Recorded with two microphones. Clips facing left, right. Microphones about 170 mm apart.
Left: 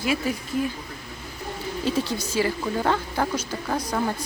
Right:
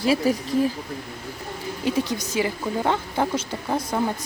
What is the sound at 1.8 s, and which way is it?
Speech, 15° right (ahead or behind).